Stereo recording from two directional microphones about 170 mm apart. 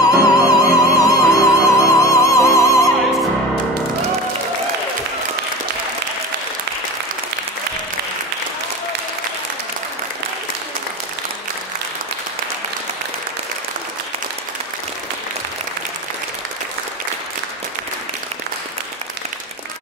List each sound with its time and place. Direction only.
0.0 s music: 20° left (ahead or behind)